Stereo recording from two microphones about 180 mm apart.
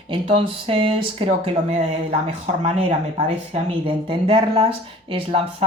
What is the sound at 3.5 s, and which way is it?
Speech, 30° right (ahead or behind).